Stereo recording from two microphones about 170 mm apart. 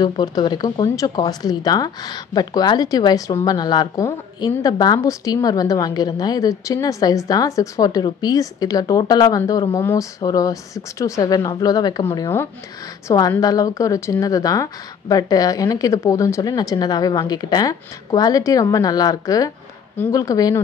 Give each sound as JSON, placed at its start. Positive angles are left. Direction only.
{"t": 0.0, "sound": "speech", "side_deg": 25}